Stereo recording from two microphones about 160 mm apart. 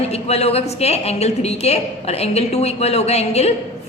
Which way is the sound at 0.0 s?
40° left (ahead or behind).